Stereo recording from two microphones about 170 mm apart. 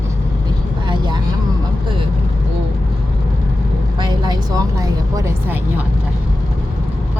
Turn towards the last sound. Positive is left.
turn(degrees=-20)  # may be behind; listen again after turning